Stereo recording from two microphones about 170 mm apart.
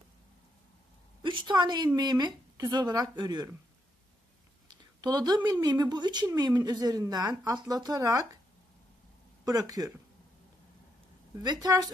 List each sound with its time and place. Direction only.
1.2 s a woman's voice: 30° right (ahead or behind)
4.6 s speech: 25° right (ahead or behind)
9.4 s speech: 20° right (ahead or behind)
11.4 s speech: 25° right (ahead or behind)